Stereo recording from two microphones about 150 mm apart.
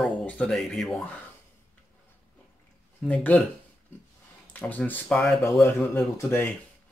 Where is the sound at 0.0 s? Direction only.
5° left (ahead or behind).